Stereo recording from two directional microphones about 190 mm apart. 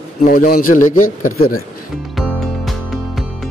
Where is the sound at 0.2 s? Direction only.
45° left (ahead or behind).